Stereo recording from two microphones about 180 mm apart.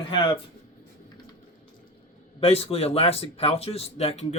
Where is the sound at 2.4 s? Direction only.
35° left (ahead or behind).